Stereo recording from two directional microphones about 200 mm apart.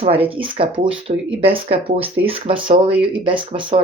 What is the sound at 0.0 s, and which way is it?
Speech, 30° right (ahead or behind).